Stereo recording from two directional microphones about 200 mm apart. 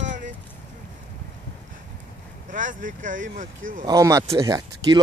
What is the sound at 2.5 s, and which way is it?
Speech, 40° right (ahead or behind).